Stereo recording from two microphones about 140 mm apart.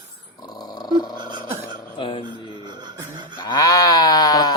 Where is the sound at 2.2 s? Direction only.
30° right (ahead or behind).